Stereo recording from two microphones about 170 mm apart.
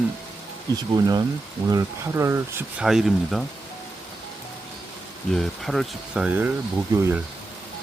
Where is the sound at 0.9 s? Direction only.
25° right (ahead or behind).